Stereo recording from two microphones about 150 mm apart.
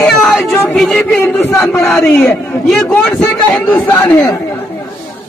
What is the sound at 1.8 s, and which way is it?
Speech, 15° left (ahead or behind).